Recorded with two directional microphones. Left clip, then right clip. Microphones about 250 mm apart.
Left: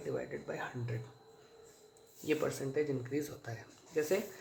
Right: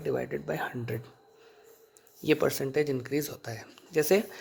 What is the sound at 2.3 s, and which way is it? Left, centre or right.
Speech, right.